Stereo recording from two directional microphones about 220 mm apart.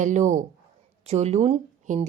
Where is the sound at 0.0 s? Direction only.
35° right (ahead or behind).